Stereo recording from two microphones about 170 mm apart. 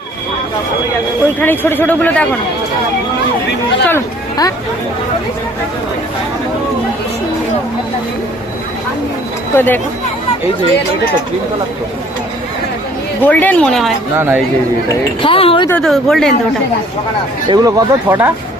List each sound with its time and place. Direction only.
1.4 s speech: 10° left (ahead or behind)
3.8 s speech: 20° left (ahead or behind)
9.6 s speech: 10° left (ahead or behind)
13.2 s speech: 10° left (ahead or behind)
14.2 s speech: 10° right (ahead or behind)
15.2 s a sound: 30° left (ahead or behind)
15.7 s speech: 5° left (ahead or behind)
17.5 s speech: 20° right (ahead or behind)